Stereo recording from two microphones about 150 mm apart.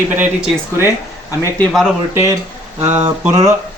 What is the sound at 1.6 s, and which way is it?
Speech, centre (ahead or behind).